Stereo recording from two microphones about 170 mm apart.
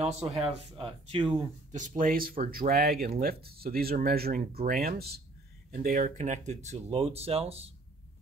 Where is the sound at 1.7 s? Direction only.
45° right (ahead or behind); by 5.2 s 65° right (ahead or behind).